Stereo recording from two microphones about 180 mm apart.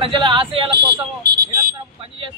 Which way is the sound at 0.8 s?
60° right (ahead or behind).